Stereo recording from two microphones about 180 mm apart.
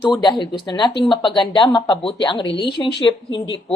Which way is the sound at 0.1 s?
25° left (ahead or behind).